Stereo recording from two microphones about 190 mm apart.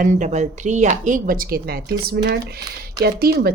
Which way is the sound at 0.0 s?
40° right (ahead or behind).